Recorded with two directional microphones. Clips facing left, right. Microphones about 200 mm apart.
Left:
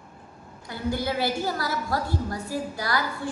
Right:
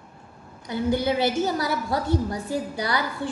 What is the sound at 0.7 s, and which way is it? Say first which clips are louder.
A woman's voice: right 5 dB; 20° right (ahead or behind).